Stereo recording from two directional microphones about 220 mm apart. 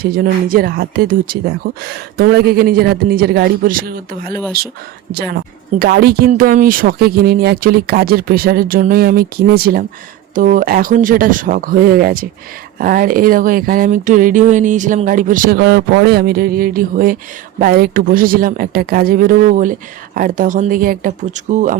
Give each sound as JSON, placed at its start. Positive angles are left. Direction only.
{"t": 0.0, "sound": "speech", "side_deg": -40}